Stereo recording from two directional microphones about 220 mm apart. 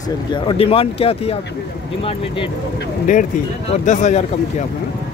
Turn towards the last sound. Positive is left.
turn(degrees=35)  # may be behind; listen again after turning